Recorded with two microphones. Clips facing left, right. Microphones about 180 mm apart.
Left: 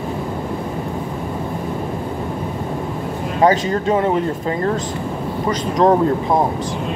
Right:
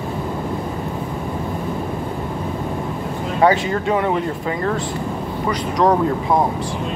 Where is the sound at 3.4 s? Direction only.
40° left (ahead or behind).